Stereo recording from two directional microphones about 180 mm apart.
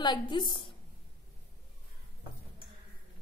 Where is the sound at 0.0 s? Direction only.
25° left (ahead or behind).